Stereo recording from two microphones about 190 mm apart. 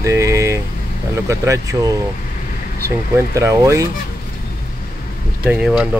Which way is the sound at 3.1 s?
15° right (ahead or behind).